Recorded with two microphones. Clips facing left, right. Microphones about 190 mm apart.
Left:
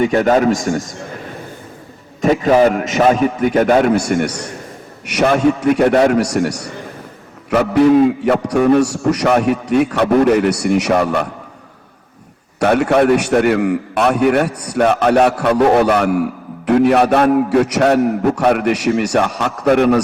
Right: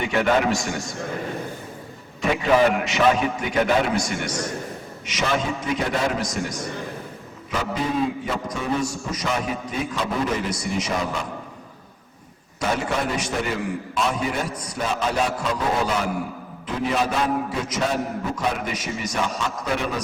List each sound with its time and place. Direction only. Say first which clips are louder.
0.0 s a man's voice: left 8 dB; 40° left (ahead or behind)
2.2 s a man's voice: left 7 dB; 40° left (ahead or behind); by 11.3 s 65° left (ahead or behind)
12.5 s a man's voice: left 12 dB; 65° left (ahead or behind)